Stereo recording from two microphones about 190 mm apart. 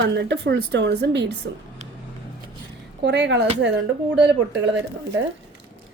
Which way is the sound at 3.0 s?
65° right (ahead or behind).